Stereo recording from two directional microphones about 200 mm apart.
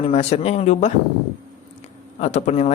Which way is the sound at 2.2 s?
35° left (ahead or behind).